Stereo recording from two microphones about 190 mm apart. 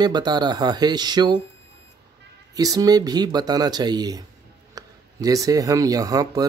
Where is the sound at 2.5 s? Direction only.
20° right (ahead or behind).